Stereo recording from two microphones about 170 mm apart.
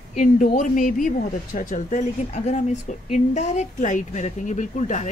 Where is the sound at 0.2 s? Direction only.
50° left (ahead or behind).